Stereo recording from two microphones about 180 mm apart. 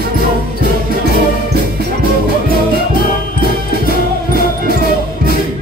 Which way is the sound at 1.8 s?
60° right (ahead or behind).